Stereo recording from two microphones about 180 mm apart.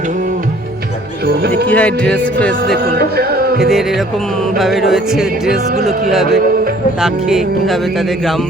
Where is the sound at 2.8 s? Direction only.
60° right (ahead or behind).